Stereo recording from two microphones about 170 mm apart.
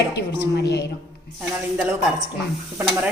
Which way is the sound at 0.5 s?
75° left (ahead or behind).